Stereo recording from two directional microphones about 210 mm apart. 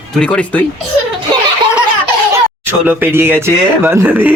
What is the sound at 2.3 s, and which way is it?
Speech, 10° right (ahead or behind).